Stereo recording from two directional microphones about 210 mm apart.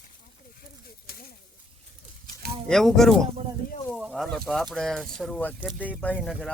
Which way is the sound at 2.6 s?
Centre (ahead or behind).